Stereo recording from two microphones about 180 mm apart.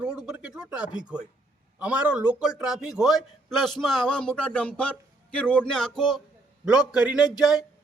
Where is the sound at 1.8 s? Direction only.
5° right (ahead or behind).